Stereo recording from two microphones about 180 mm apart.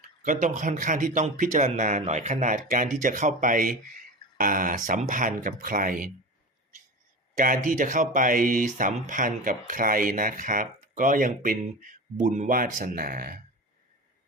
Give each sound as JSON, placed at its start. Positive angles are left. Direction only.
{"t": 0.2, "sound": "speech", "side_deg": -45}
{"t": 7.3, "sound": "speech", "side_deg": -45}